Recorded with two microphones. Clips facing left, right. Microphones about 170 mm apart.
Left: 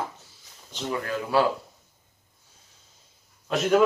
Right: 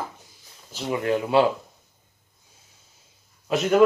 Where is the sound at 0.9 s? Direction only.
20° right (ahead or behind).